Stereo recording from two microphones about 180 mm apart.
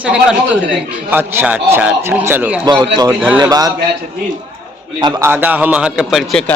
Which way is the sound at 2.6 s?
25° right (ahead or behind).